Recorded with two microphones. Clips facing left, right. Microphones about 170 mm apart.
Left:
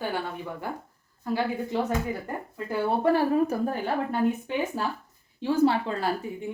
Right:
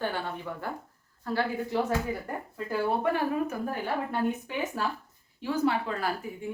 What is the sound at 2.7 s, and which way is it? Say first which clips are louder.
A woman's voice: left 4 dB; 30° left (ahead or behind).